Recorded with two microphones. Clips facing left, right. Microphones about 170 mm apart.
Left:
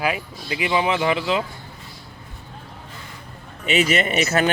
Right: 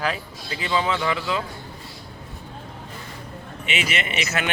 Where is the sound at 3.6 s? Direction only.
40° left (ahead or behind).